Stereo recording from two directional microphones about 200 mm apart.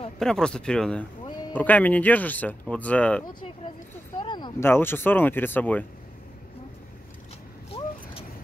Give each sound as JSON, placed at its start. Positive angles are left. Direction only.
{"t": 0.2, "sound": "speech", "side_deg": 5}
{"t": 3.3, "sound": "speech", "side_deg": 25}
{"t": 7.7, "sound": "vehicle", "side_deg": 30}